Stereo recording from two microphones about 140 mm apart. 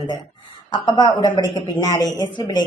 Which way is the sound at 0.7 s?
30° left (ahead or behind).